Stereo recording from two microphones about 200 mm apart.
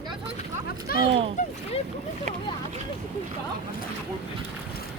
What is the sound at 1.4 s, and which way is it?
Speech, 40° left (ahead or behind).